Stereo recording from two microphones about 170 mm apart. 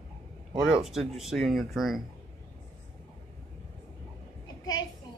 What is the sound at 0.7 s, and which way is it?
Speech, centre (ahead or behind).